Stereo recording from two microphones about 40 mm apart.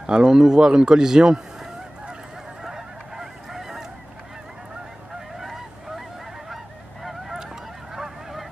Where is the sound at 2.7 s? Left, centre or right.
Centre.